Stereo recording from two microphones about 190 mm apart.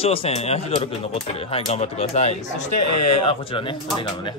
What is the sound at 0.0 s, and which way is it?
A man's voice, 30° left (ahead or behind).